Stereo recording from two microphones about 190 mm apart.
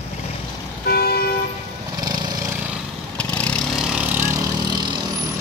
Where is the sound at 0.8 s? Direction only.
55° left (ahead or behind).